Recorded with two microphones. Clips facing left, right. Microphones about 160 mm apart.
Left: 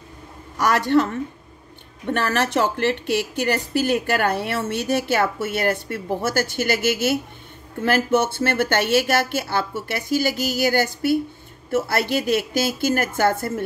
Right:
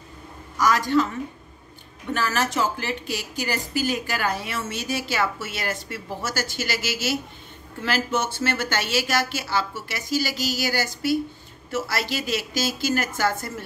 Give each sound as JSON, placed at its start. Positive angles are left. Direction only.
{"t": 0.6, "sound": "a woman's voice", "side_deg": 60}